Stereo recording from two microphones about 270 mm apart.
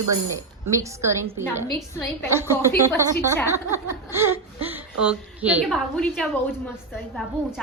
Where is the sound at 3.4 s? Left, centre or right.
Centre.